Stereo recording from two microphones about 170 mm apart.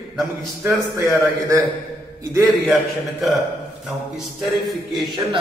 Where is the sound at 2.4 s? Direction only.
Centre (ahead or behind).